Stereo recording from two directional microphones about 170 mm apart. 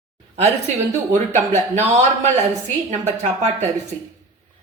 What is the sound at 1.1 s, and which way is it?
Speech, 45° right (ahead or behind).